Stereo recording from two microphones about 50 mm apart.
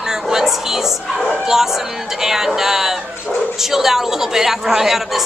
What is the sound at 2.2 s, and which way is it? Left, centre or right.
Speech, centre.